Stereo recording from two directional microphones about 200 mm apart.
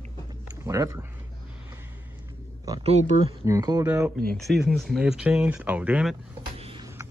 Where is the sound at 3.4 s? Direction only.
20° right (ahead or behind).